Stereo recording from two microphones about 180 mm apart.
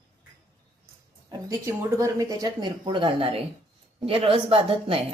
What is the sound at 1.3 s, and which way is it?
A woman's voice, 15° right (ahead or behind).